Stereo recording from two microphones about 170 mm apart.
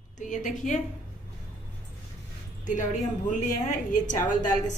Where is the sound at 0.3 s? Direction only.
50° left (ahead or behind).